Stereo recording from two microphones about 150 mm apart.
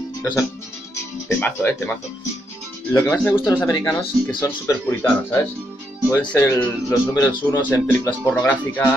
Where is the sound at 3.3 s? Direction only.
5° right (ahead or behind).